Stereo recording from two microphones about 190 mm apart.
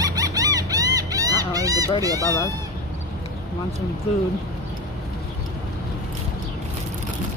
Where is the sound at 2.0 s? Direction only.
20° right (ahead or behind).